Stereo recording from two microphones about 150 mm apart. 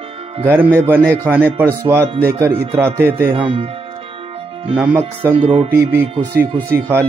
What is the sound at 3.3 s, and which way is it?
Music, 35° right (ahead or behind).